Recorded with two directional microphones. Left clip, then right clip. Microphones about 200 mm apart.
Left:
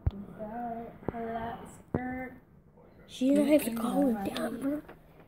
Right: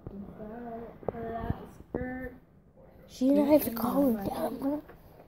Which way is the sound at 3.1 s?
Centre (ahead or behind).